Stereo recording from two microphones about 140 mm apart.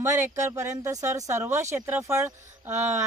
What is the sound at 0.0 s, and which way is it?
A man's voice, 25° right (ahead or behind).